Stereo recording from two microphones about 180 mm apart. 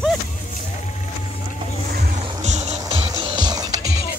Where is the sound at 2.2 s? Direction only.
40° right (ahead or behind).